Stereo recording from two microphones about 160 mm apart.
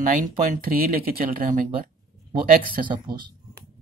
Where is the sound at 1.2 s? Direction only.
60° right (ahead or behind).